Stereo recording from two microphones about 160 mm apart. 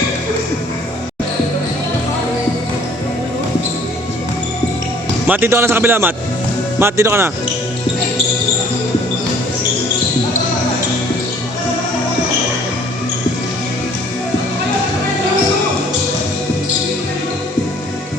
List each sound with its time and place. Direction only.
5.3 s a man's voice: 15° right (ahead or behind)